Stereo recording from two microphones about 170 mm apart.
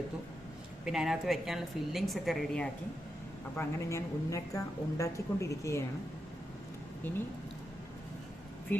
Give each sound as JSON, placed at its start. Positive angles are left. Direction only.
{"t": 0.9, "sound": "a woman's voice", "side_deg": 0}
{"t": 3.6, "sound": "a woman's voice", "side_deg": 15}